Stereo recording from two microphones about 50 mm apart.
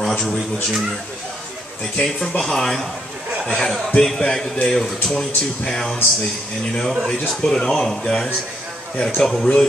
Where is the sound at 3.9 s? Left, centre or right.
Centre.